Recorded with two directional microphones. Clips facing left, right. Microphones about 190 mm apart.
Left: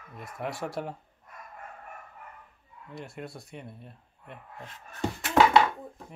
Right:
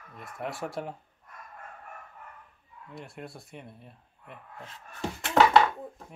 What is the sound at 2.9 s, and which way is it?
Speech, centre (ahead or behind).